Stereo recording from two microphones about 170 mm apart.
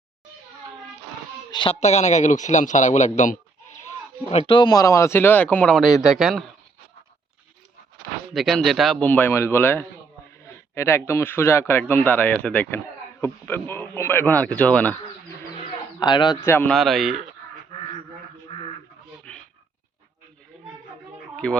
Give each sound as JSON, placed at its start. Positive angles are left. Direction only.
{"t": 1.5, "sound": "speech", "side_deg": 30}
{"t": 8.3, "sound": "speech", "side_deg": 0}
{"t": 16.0, "sound": "speech", "side_deg": 25}
{"t": 16.4, "sound": "speech", "side_deg": 15}
{"t": 16.7, "sound": "speech", "side_deg": 0}
{"t": 19.3, "sound": "a sound", "side_deg": 5}
{"t": 21.3, "sound": "speech", "side_deg": 5}